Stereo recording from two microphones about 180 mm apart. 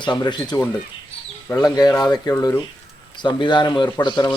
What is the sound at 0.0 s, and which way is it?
Speech, 25° left (ahead or behind).